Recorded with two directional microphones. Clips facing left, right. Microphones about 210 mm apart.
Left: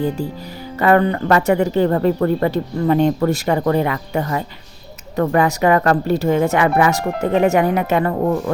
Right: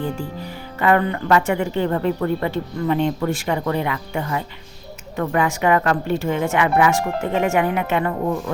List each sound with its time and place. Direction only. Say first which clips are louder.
0.8 s speech: left 4 dB; 40° left (ahead or behind)